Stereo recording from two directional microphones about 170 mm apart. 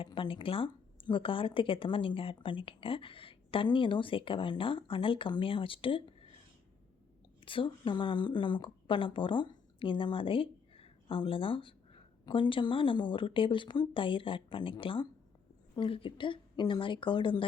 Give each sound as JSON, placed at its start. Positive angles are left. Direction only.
{"t": 0.0, "sound": "speech", "side_deg": 30}
{"t": 7.4, "sound": "a woman's voice", "side_deg": 30}